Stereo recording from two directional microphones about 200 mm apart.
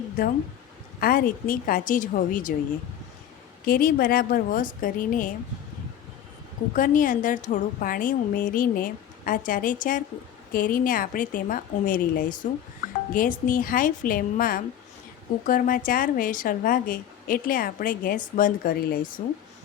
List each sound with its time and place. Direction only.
0.9 s a woman's voice: 45° left (ahead or behind)
3.7 s a woman's voice: 45° left (ahead or behind)
6.7 s a woman's voice: 40° left (ahead or behind)